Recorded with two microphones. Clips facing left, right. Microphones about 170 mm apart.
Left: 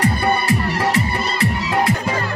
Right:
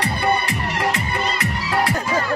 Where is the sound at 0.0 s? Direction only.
40° left (ahead or behind).